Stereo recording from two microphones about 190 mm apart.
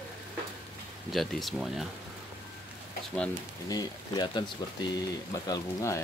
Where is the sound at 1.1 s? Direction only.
Centre (ahead or behind).